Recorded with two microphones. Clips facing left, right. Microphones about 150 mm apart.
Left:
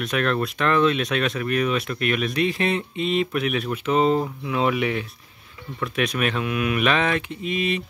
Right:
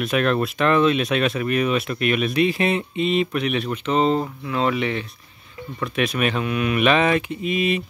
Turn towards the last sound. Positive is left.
turn(degrees=-10)  # may be behind; listen again after turning